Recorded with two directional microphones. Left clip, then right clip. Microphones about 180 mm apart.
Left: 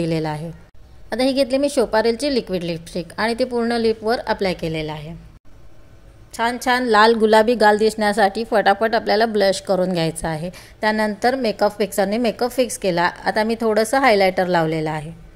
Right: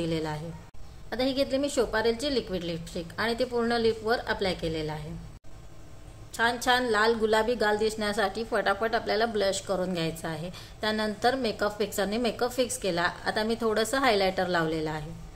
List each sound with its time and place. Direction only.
0.0 s a woman's voice: 35° left (ahead or behind)
6.3 s a woman's voice: 30° left (ahead or behind)
6.9 s a woman's voice: 45° left (ahead or behind)